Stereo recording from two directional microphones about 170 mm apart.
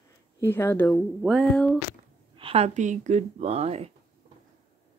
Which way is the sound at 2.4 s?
35° right (ahead or behind).